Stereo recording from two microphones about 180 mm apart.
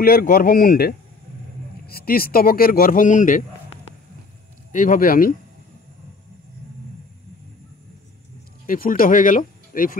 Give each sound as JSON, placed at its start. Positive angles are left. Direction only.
{"t": 0.0, "sound": "speech", "side_deg": 55}
{"t": 4.7, "sound": "speech", "side_deg": 50}
{"t": 8.6, "sound": "speech", "side_deg": 50}